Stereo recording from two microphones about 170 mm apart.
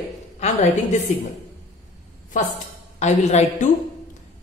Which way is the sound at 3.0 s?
40° left (ahead or behind).